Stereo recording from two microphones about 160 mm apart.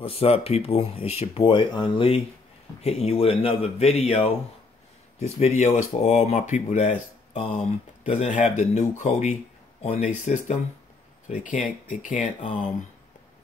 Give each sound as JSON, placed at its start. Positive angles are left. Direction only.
{"t": 0.0, "sound": "speech", "side_deg": 40}